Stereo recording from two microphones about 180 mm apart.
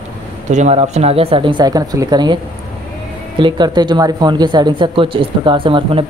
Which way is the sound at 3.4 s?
25° right (ahead or behind).